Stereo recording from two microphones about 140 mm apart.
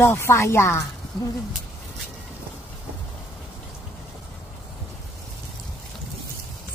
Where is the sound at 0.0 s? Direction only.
15° left (ahead or behind).